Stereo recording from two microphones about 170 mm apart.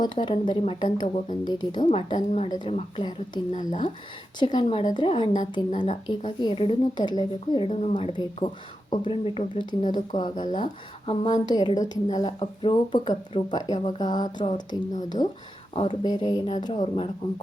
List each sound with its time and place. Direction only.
0.0 s speech: 25° left (ahead or behind)